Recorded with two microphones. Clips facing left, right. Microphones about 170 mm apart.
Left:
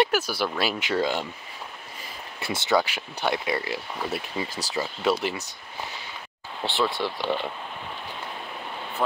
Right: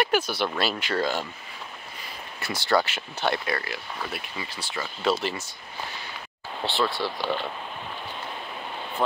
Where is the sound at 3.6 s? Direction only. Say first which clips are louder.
Left 3 dB; 30° left (ahead or behind).